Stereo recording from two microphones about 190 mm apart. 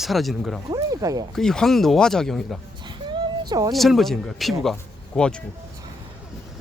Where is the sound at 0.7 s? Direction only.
20° right (ahead or behind).